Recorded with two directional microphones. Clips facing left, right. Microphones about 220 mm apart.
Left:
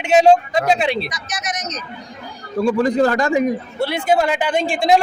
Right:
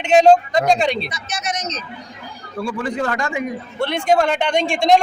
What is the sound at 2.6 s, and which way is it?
Speech, 35° left (ahead or behind).